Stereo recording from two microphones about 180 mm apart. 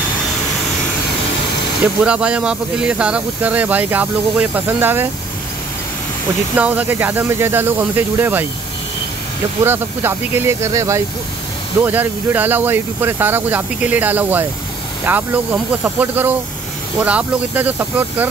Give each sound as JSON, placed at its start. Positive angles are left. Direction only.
{"t": 2.0, "sound": "speech", "side_deg": -5}
{"t": 6.5, "sound": "speech", "side_deg": -10}
{"t": 9.7, "sound": "speech", "side_deg": -10}